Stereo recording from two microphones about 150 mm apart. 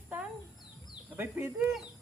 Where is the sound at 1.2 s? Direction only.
15° right (ahead or behind).